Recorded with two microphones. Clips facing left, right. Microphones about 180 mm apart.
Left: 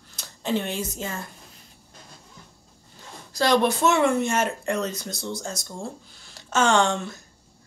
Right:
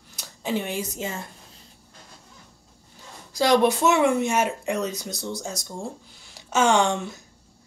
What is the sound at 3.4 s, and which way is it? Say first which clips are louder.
Speech: right 1 dB; 15° right (ahead or behind).